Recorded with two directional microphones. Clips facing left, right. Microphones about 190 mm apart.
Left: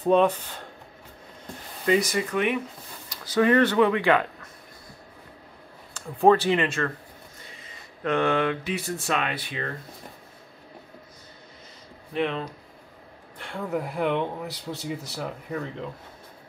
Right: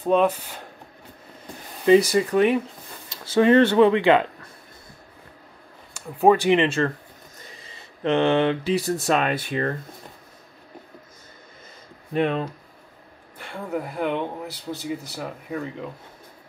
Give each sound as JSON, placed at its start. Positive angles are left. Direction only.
{"t": 0.0, "sound": "speech", "side_deg": -5}
{"t": 1.9, "sound": "speech", "side_deg": -30}
{"t": 5.9, "sound": "speech", "side_deg": -10}
{"t": 12.1, "sound": "speech", "side_deg": -45}
{"t": 13.4, "sound": "speech", "side_deg": 0}